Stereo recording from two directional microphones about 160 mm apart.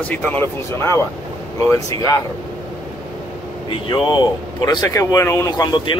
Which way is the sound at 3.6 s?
30° left (ahead or behind).